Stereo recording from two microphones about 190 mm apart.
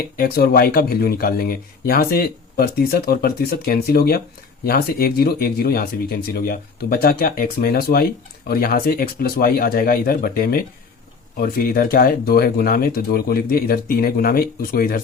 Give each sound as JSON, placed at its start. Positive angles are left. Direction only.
{"t": 0.2, "sound": "speech", "side_deg": 50}